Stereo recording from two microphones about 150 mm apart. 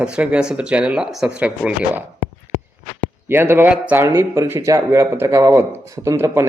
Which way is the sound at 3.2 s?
15° right (ahead or behind).